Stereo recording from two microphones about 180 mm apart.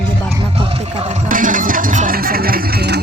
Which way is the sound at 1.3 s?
50° right (ahead or behind).